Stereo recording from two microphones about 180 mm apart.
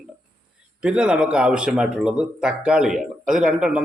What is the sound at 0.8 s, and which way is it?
Speech, 5° right (ahead or behind).